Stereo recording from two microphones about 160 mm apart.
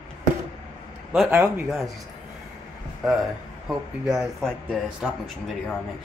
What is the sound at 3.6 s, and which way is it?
Speech, 5° right (ahead or behind).